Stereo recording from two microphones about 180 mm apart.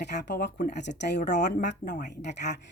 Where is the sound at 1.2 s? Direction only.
40° left (ahead or behind).